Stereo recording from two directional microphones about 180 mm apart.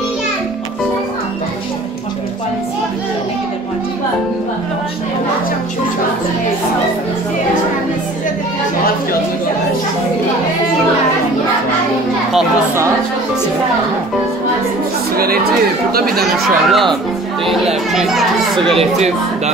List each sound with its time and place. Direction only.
15.9 s speech: 55° right (ahead or behind)
16.6 s a child's voice: centre (ahead or behind)
17.9 s a child's voice: centre (ahead or behind)
18.8 s speech: 40° right (ahead or behind)